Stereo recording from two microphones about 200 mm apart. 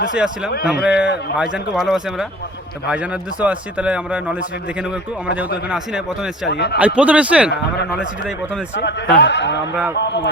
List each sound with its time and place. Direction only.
0.1 s speech: 5° right (ahead or behind)
5.6 s speech: 5° right (ahead or behind)
6.5 s a man's voice: 55° left (ahead or behind)
6.7 s speech: 5° right (ahead or behind)
8.7 s a man's voice: 60° left (ahead or behind)